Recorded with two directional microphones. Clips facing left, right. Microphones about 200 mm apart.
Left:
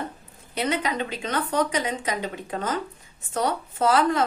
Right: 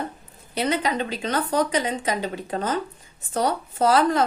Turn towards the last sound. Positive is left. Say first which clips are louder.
# right 2 dB
turn(degrees=-35)  # may be behind; listen again after turning